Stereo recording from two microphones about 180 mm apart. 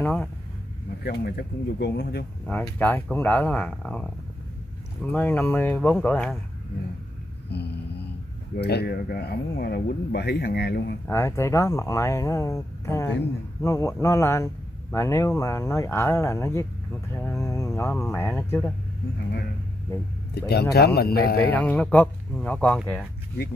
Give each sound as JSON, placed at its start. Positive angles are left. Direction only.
{"t": 0.0, "sound": "speech", "side_deg": 10}
{"t": 1.0, "sound": "speech", "side_deg": 60}
{"t": 2.4, "sound": "speech", "side_deg": 10}
{"t": 5.1, "sound": "speech", "side_deg": 10}
{"t": 7.5, "sound": "mantra", "side_deg": 70}
{"t": 8.5, "sound": "speech", "side_deg": 65}
{"t": 11.1, "sound": "speech", "side_deg": 15}
{"t": 17.1, "sound": "a sound", "side_deg": 15}
{"t": 18.1, "sound": "speech", "side_deg": 15}
{"t": 20.3, "sound": "speech", "side_deg": 60}
{"t": 21.5, "sound": "speech", "side_deg": 10}